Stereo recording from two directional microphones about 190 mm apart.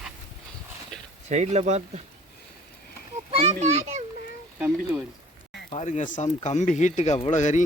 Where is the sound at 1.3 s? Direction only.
35° right (ahead or behind).